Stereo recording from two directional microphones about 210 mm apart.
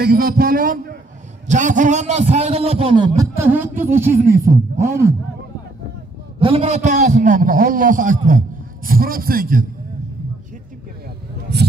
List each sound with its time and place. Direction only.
0.0 s a man's voice: 45° right (ahead or behind); by 3.4 s 20° right (ahead or behind)
3.4 s speech: 10° right (ahead or behind)
6.4 s a man's voice: 30° right (ahead or behind)